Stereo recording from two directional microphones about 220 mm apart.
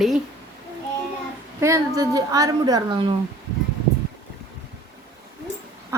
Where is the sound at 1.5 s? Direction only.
15° right (ahead or behind).